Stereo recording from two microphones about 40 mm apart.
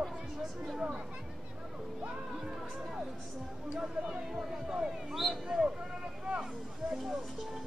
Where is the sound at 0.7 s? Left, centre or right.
Right.